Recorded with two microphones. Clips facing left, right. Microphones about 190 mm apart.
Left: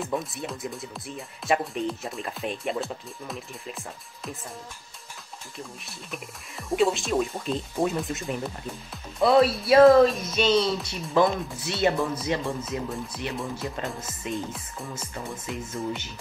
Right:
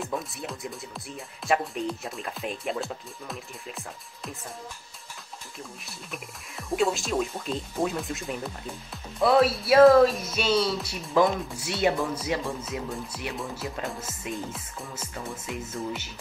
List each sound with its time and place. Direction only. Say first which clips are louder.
0.0 s speech: left 3 dB; centre (ahead or behind)
6.7 s speech: left 2 dB; centre (ahead or behind)